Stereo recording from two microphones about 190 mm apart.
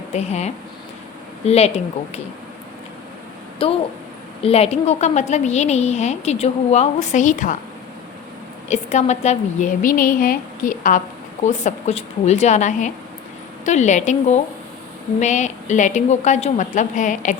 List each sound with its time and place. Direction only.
0.1 s a woman's voice: 35° left (ahead or behind)
3.6 s a woman's voice: 30° left (ahead or behind)
8.7 s a woman's voice: 35° left (ahead or behind)